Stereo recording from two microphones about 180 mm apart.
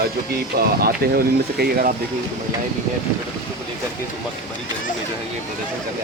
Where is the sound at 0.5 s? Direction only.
55° right (ahead or behind).